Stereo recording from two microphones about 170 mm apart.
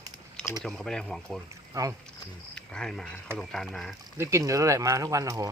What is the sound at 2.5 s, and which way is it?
Speech, 5° left (ahead or behind).